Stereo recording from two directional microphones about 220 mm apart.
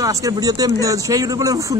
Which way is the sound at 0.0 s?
15° right (ahead or behind).